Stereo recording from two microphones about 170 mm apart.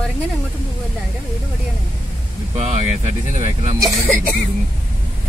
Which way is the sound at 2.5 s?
40° right (ahead or behind).